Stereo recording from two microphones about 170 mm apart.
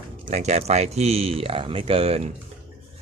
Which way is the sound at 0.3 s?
40° right (ahead or behind).